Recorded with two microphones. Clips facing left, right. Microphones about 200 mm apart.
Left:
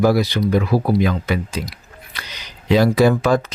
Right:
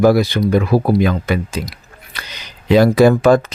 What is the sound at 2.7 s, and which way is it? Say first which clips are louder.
Speech: right 4 dB; 55° right (ahead or behind).